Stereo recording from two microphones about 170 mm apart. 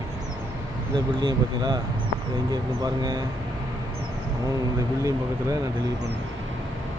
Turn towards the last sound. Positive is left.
turn(degrees=-20)  # may be behind; listen again after turning